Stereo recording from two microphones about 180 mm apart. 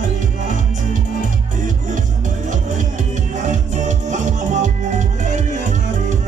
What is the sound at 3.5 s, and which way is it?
Music, 40° right (ahead or behind).